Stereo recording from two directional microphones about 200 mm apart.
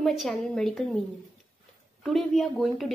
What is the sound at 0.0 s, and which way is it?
Speech, centre (ahead or behind).